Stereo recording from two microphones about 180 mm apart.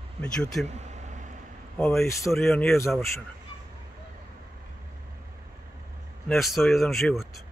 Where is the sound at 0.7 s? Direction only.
40° right (ahead or behind).